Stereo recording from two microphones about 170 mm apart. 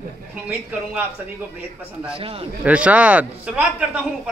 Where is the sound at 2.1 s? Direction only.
35° right (ahead or behind).